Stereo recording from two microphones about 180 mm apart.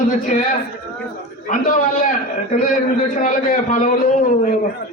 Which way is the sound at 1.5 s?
45° left (ahead or behind).